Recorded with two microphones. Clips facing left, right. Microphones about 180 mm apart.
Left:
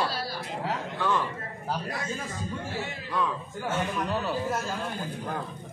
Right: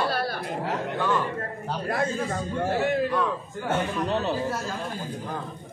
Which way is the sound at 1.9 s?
60° right (ahead or behind).